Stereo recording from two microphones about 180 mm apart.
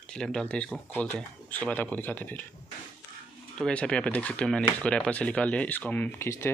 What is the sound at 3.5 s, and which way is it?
Speech, 5° left (ahead or behind).